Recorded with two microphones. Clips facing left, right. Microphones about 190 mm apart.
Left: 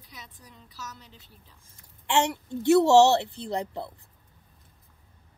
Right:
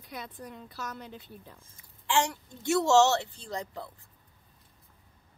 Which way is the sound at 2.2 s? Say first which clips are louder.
Left 8 dB; 25° left (ahead or behind).